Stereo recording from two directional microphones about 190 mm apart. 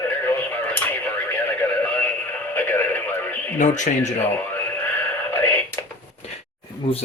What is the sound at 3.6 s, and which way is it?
Speech, 40° left (ahead or behind).